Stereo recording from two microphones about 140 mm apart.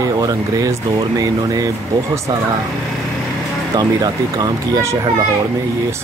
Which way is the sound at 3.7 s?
25° right (ahead or behind).